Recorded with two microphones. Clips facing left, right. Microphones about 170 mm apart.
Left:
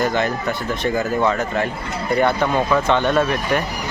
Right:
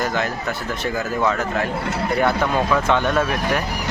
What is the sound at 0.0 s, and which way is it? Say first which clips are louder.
Speech: left 3 dB; centre (ahead or behind).